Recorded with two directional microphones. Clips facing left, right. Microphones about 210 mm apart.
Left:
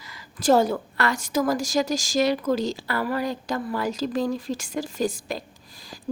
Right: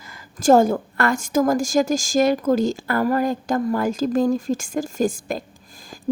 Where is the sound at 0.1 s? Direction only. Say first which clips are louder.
Right 4 dB; 45° right (ahead or behind).